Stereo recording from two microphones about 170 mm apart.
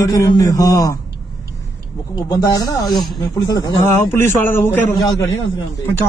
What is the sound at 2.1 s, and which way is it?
A man's voice, 20° left (ahead or behind).